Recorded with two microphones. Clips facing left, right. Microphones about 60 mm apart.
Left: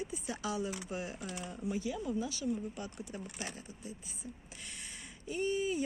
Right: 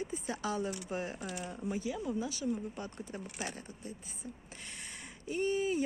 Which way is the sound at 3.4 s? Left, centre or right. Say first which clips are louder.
Right 2 dB; right.